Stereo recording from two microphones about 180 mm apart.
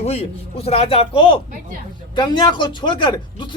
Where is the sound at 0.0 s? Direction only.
35° left (ahead or behind).